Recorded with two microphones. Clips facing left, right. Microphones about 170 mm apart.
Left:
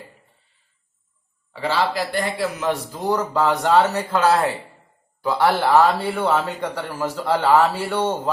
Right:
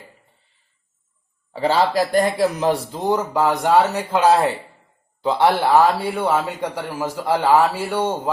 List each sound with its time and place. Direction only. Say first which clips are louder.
1.6 s a man's voice: right 4 dB; 40° right (ahead or behind); by 8.3 s 10° right (ahead or behind)